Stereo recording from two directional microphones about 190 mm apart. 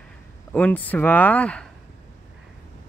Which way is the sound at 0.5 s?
5° left (ahead or behind).